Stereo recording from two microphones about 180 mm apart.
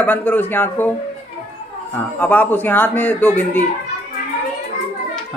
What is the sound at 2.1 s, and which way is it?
Speech, 10° left (ahead or behind).